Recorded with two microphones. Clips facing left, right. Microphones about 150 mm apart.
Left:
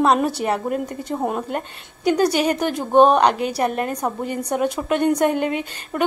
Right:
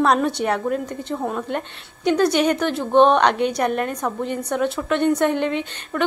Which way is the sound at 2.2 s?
35° left (ahead or behind).